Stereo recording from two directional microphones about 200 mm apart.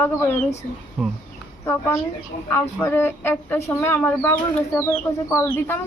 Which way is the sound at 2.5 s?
10° left (ahead or behind).